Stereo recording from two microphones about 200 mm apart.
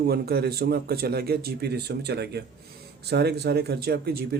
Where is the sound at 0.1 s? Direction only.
50° right (ahead or behind).